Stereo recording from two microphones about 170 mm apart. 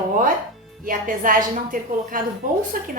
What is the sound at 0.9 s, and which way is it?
A woman's voice, 55° right (ahead or behind).